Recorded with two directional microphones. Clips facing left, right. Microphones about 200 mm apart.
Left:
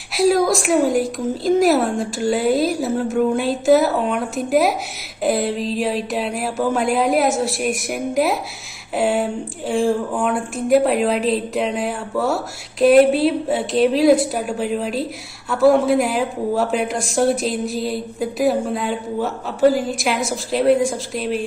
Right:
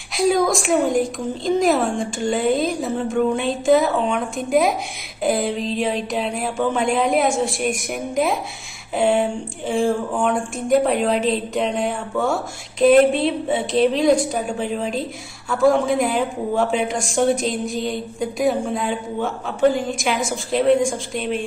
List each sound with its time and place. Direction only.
0.1 s speech: centre (ahead or behind)